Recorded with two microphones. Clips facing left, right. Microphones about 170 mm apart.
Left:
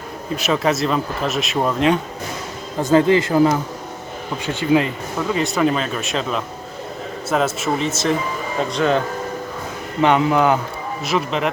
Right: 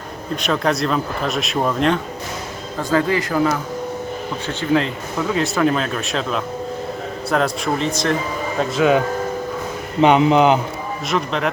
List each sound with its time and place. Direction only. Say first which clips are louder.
0.4 s speech: left 1 dB; 5° left (ahead or behind)
2.9 s speech: left 4 dB; 25° left (ahead or behind)
4.4 s speech: left 2 dB; 5° left (ahead or behind)
10.0 s speech: right 3 dB; 20° right (ahead or behind)
11.1 s speech: left 1 dB; centre (ahead or behind)